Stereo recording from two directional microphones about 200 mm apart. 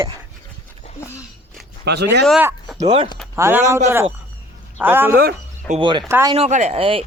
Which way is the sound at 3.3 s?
10° right (ahead or behind).